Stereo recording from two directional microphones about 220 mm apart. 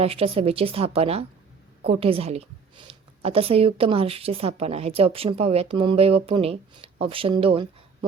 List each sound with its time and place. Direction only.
0.0 s a woman's voice: 25° right (ahead or behind)